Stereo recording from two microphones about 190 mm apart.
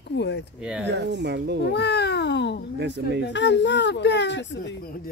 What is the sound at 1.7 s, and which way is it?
Cat, 60° left (ahead or behind).